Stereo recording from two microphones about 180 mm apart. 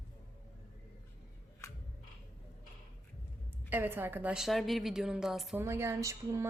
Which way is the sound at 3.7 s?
10° right (ahead or behind).